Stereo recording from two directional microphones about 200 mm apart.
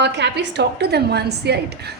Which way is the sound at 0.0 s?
60° right (ahead or behind).